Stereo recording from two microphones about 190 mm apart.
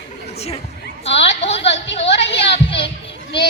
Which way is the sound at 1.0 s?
30° left (ahead or behind).